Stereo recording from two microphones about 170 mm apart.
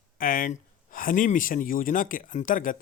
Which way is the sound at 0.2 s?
55° left (ahead or behind).